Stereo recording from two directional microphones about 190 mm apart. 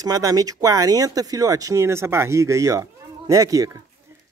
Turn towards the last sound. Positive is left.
turn(degrees=-15)  # may be behind; listen again after turning